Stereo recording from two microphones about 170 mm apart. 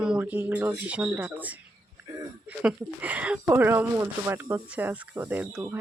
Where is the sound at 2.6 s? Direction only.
10° right (ahead or behind).